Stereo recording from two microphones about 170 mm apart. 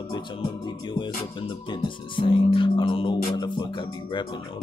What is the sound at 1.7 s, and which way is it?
Music, 30° left (ahead or behind).